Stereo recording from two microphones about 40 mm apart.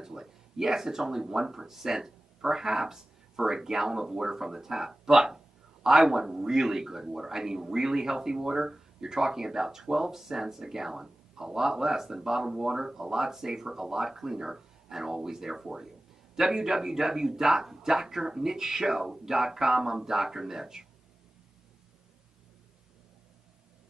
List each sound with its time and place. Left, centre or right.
0.0 s speech: centre